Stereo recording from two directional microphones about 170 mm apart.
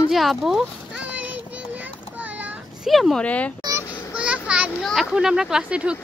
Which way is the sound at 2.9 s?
Centre (ahead or behind).